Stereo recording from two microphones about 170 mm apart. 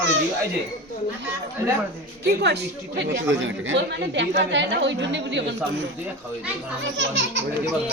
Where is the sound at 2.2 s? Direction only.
75° right (ahead or behind).